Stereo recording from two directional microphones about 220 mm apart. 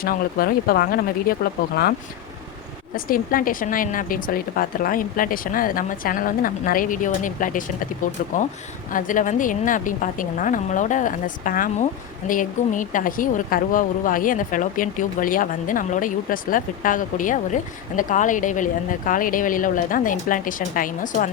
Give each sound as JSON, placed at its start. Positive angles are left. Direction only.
{"t": 0.0, "sound": "a woman's voice", "side_deg": 40}